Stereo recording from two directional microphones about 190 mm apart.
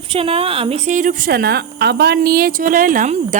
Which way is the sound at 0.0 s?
30° right (ahead or behind).